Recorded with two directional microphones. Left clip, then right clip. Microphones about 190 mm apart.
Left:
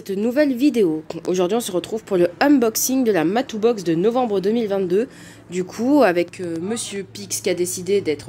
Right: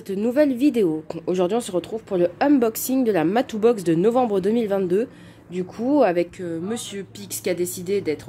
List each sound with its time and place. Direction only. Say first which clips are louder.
0.1 s a woman's voice: left 1 dB; 5° right (ahead or behind)
2.6 s a woman's voice: left 2 dB; 5° right (ahead or behind)
3.5 s speech: even; 15° right (ahead or behind)
5.5 s a woman's voice: left 3 dB; 10° left (ahead or behind)